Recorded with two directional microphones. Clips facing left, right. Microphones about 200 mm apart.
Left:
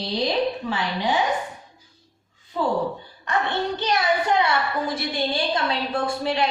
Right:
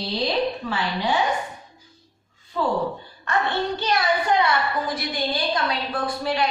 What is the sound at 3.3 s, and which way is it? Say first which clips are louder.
A woman's voice: even; 20° left (ahead or behind).